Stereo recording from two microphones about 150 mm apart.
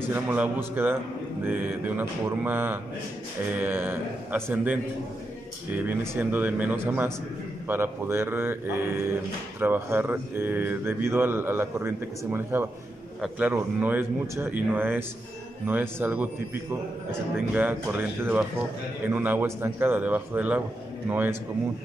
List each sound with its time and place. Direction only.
0.0 s speech: 10° right (ahead or behind)
5.8 s speech: 10° right (ahead or behind)
17.6 s speech: 10° right (ahead or behind)